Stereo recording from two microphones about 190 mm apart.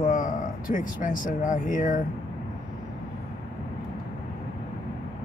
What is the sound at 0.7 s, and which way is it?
Speech, 45° left (ahead or behind).